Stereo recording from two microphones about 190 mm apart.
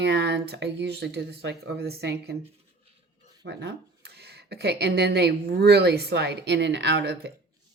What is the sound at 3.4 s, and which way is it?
Speech, 65° right (ahead or behind).